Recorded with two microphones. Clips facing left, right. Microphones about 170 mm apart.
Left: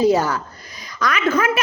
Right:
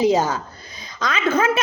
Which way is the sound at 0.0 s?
20° right (ahead or behind).